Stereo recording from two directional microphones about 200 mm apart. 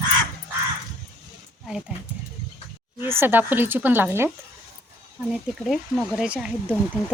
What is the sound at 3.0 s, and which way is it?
Speech, 10° right (ahead or behind).